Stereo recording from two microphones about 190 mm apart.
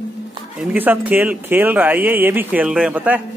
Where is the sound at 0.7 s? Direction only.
10° right (ahead or behind).